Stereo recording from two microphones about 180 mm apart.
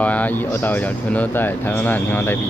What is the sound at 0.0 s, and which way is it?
Speech, 10° left (ahead or behind).